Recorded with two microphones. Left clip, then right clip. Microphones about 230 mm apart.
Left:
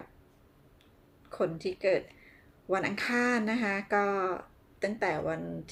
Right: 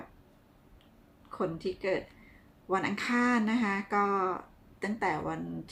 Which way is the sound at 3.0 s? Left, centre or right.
Right.